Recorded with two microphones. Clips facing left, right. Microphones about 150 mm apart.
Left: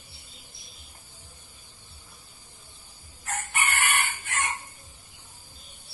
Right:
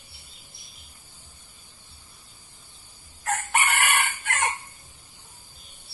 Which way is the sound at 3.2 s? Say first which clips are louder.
Right 5 dB; 85° right.